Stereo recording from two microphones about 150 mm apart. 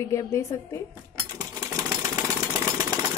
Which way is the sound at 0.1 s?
20° left (ahead or behind).